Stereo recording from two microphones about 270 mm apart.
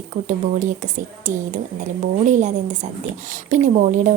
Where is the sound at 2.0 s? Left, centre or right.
Right.